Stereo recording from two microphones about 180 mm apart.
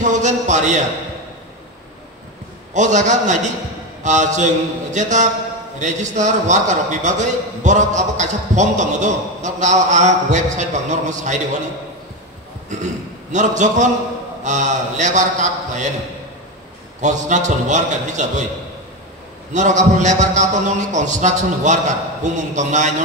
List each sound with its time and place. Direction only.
0.0 s a man's voice: 40° right (ahead or behind)
2.7 s a man's voice: 40° right (ahead or behind)
12.6 s a man's voice: 40° right (ahead or behind)
17.0 s a man's voice: 40° right (ahead or behind)
19.5 s a man's voice: 40° right (ahead or behind)